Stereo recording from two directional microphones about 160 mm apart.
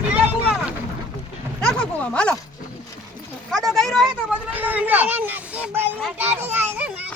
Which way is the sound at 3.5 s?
Centre (ahead or behind).